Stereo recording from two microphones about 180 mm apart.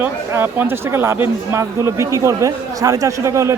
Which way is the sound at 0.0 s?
10° right (ahead or behind).